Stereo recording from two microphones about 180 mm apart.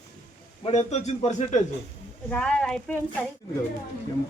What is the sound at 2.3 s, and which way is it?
Speech, 5° left (ahead or behind).